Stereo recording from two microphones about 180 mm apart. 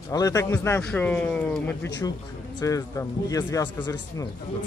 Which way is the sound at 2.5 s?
20° left (ahead or behind).